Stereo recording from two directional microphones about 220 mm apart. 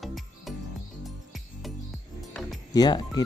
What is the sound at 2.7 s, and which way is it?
Speech, 15° left (ahead or behind).